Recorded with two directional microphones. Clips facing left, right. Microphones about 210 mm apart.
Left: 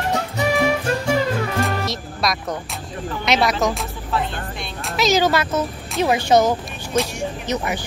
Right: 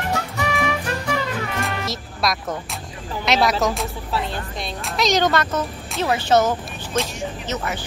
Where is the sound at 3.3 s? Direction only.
Centre (ahead or behind).